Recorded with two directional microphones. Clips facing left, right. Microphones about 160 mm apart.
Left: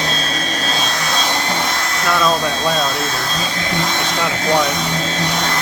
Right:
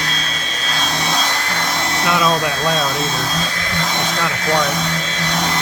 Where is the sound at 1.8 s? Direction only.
25° right (ahead or behind).